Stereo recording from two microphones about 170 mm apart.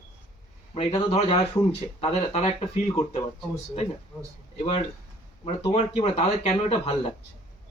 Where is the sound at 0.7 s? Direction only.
35° left (ahead or behind).